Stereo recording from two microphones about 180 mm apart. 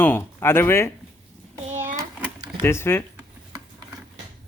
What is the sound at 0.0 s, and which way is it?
Speech, 10° left (ahead or behind).